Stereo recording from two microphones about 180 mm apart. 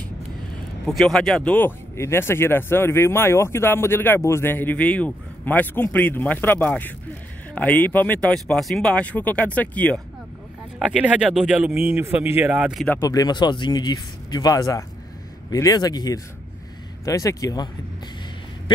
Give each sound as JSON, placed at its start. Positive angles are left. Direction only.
{"t": 0.8, "sound": "speech", "side_deg": 0}
{"t": 10.8, "sound": "speech", "side_deg": -5}
{"t": 12.8, "sound": "speech", "side_deg": 15}